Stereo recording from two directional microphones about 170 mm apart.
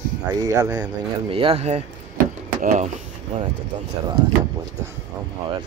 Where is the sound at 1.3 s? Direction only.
35° right (ahead or behind).